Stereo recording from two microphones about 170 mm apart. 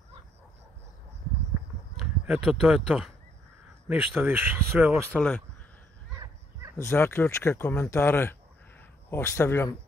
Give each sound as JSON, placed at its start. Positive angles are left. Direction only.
{"t": 2.0, "sound": "a sound", "side_deg": -5}
{"t": 2.6, "sound": "speech", "side_deg": -5}
{"t": 5.1, "sound": "speech", "side_deg": 10}
{"t": 6.1, "sound": "dog", "side_deg": -20}
{"t": 6.8, "sound": "speech", "side_deg": 15}